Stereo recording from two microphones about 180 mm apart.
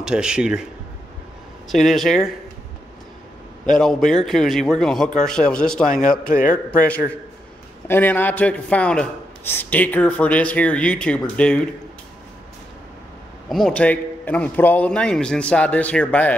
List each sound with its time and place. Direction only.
0.0 s a man's voice: 5° right (ahead or behind)
1.7 s a man's voice: centre (ahead or behind)
3.7 s a man's voice: centre (ahead or behind)
5.9 s a man's voice: 45° left (ahead or behind)
7.9 s a man's voice: 10° left (ahead or behind)
13.5 s a man's voice: 5° left (ahead or behind)